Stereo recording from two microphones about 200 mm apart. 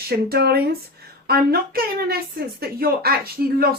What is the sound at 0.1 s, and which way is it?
Speech, 50° right (ahead or behind).